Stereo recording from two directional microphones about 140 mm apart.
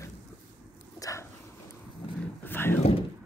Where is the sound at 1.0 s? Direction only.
25° left (ahead or behind).